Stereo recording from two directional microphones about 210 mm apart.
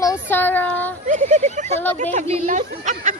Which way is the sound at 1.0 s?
35° right (ahead or behind).